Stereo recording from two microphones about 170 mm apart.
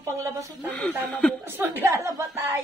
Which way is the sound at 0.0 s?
15° right (ahead or behind).